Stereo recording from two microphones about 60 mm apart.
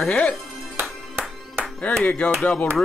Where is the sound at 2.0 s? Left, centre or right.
Left.